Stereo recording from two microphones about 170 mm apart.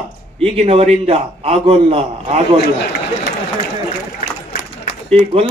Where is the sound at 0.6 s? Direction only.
35° right (ahead or behind).